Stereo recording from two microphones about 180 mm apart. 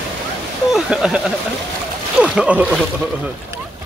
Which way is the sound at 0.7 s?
5° right (ahead or behind).